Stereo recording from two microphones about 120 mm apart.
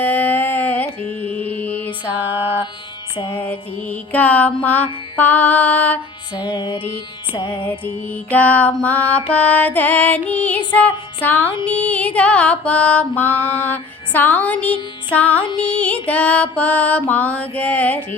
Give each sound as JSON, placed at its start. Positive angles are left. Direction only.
{"t": 0.0, "sound": "mantra", "side_deg": 15}
{"t": 2.3, "sound": "music", "side_deg": -15}
{"t": 3.3, "sound": "music", "side_deg": 15}
{"t": 6.3, "sound": "music", "side_deg": 35}
{"t": 7.5, "sound": "music", "side_deg": 15}